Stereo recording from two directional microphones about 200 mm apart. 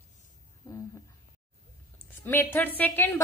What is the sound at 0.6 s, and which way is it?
Speech, 15° left (ahead or behind).